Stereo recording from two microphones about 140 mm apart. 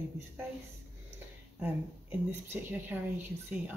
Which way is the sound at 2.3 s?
15° right (ahead or behind).